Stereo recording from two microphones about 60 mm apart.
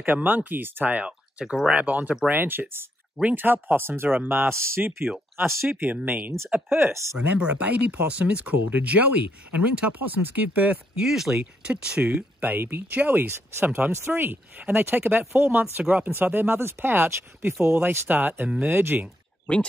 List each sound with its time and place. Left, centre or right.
0.0 s speech: right
1.4 s speech: centre
1.8 s speech: right
5.4 s speech: right
7.2 s speech: right
11.0 s speech: centre
11.3 s speech: centre
12.4 s speech: right
18.0 s speech: right